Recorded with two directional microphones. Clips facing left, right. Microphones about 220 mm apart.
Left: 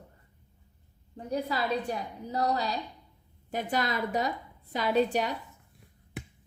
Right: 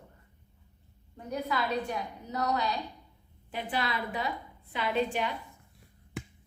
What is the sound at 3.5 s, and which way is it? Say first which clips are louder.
A woman's voice: left 3 dB; 45° left (ahead or behind).